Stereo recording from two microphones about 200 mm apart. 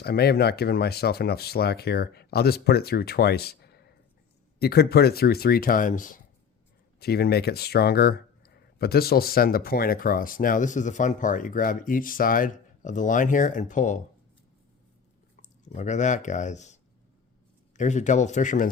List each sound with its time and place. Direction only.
0.0 s speech: 50° left (ahead or behind)
7.0 s speech: 50° left (ahead or behind)
15.4 s speech: 35° left (ahead or behind)
17.7 s speech: 35° left (ahead or behind)